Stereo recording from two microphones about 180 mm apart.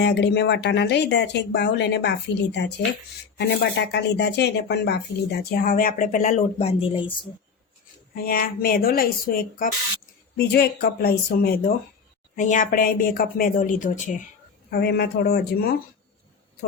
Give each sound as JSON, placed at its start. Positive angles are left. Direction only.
{"t": 0.0, "sound": "speech", "side_deg": 70}
{"t": 8.1, "sound": "speech", "side_deg": 55}
{"t": 12.4, "sound": "speech", "side_deg": 45}
{"t": 14.7, "sound": "speech", "side_deg": 65}